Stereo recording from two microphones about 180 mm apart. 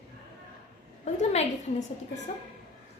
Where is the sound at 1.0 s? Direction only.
40° left (ahead or behind).